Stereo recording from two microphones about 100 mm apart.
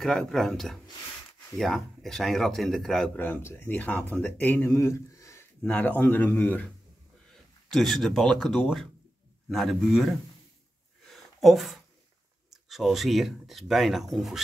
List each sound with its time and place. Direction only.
0.0 s speech: 5° left (ahead or behind)
3.2 s speech: 20° left (ahead or behind)
5.6 s speech: 15° left (ahead or behind)
7.7 s speech: centre (ahead or behind)
11.1 s a sound: centre (ahead or behind)
12.4 s speech: centre (ahead or behind)